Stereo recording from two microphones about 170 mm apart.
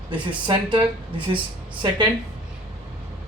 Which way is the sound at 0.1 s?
30° right (ahead or behind).